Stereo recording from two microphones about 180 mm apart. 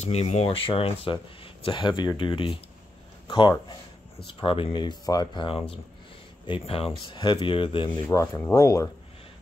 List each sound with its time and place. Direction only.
0.0 s speech: 35° left (ahead or behind)
7.9 s speech: 15° left (ahead or behind)